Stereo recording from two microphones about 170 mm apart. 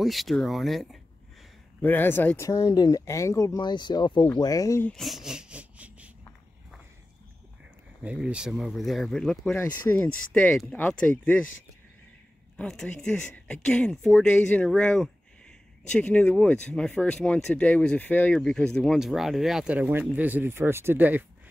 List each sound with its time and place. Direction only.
0.0 s speech: centre (ahead or behind)
1.8 s speech: 10° left (ahead or behind)
4.9 s speech: centre (ahead or behind)
8.0 s speech: 5° right (ahead or behind)
12.5 s speech: 5° left (ahead or behind); by 21.3 s 10° right (ahead or behind)